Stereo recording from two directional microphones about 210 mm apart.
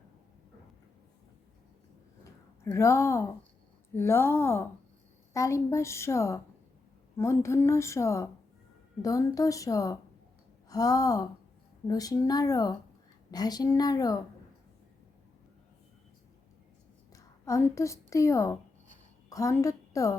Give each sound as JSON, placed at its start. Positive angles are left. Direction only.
{"t": 2.6, "sound": "a woman's voice", "side_deg": 15}
{"t": 17.1, "sound": "a woman's voice", "side_deg": 15}